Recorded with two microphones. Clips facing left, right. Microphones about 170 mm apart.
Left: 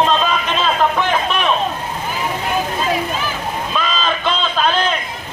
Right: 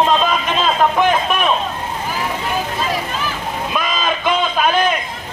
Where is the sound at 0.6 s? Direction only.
10° right (ahead or behind).